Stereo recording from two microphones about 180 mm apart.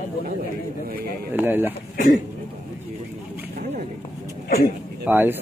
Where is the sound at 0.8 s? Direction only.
55° right (ahead or behind).